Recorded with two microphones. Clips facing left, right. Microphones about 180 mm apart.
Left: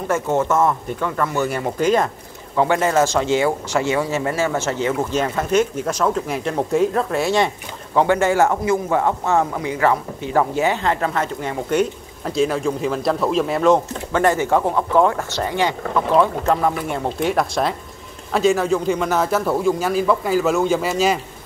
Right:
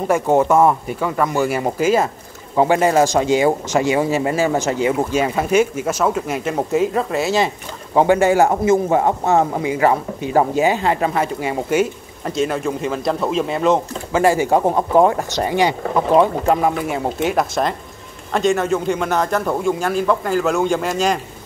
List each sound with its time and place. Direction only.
0.1 s speech: 15° right (ahead or behind)
2.5 s a man's voice: 20° right (ahead or behind); by 7.5 s centre (ahead or behind)
7.9 s a man's voice: 15° right (ahead or behind); by 21.2 s 5° left (ahead or behind)